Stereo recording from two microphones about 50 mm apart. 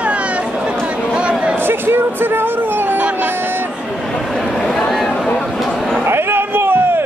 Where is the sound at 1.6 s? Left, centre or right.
Right.